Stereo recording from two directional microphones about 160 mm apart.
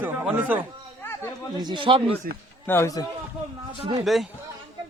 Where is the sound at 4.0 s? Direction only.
Centre (ahead or behind).